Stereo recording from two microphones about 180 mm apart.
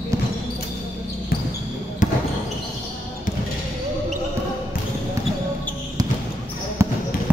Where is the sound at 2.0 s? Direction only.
45° left (ahead or behind).